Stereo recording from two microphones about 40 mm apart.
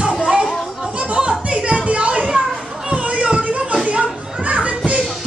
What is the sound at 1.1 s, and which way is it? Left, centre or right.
Children playing, right.